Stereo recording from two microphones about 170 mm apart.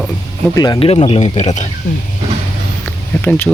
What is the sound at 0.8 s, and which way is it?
Speech, 35° left (ahead or behind).